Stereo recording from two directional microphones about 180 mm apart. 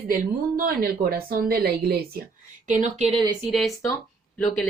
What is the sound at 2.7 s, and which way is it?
Speech, 45° right (ahead or behind).